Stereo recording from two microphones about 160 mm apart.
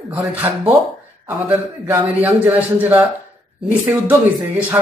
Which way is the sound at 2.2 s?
10° right (ahead or behind).